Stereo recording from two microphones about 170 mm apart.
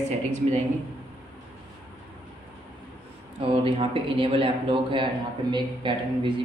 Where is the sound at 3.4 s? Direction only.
30° right (ahead or behind).